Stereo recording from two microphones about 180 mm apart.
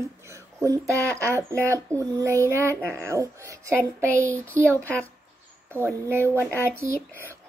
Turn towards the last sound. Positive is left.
turn(degrees=10)  # may be behind; listen again after turning